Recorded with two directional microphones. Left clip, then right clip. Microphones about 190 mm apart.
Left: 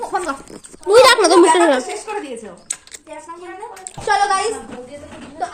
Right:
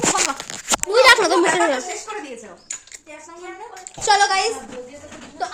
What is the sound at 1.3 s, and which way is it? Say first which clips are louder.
Speech: left 6 dB; 20° left (ahead or behind).